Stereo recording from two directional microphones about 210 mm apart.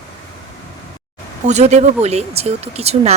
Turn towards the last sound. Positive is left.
turn(degrees=-30)  # may be behind; listen again after turning